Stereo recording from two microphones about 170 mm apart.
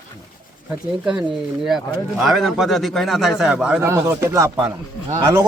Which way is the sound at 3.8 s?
15° right (ahead or behind).